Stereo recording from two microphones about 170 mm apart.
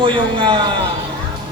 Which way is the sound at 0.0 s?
30° right (ahead or behind).